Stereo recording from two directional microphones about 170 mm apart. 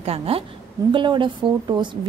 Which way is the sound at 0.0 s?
35° right (ahead or behind).